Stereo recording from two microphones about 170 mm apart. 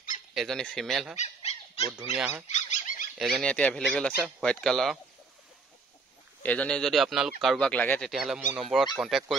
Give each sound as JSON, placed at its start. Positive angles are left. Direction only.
{"t": 0.3, "sound": "speech", "side_deg": 0}
{"t": 1.1, "sound": "squeak", "side_deg": 40}
{"t": 2.1, "sound": "speech", "side_deg": -10}
{"t": 2.5, "sound": "squeak", "side_deg": 50}
{"t": 3.2, "sound": "speech", "side_deg": 0}
{"t": 6.4, "sound": "speech", "side_deg": 10}